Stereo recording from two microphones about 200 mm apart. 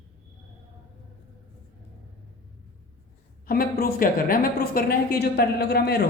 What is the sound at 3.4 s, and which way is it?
A woman's voice, 45° left (ahead or behind).